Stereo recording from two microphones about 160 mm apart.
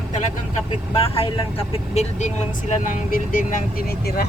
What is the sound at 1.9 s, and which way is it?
Speech, 45° left (ahead or behind).